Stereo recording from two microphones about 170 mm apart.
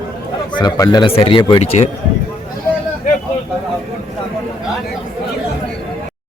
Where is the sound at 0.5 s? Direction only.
25° left (ahead or behind).